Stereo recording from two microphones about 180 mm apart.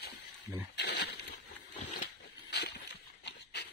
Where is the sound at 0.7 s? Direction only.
65° left (ahead or behind).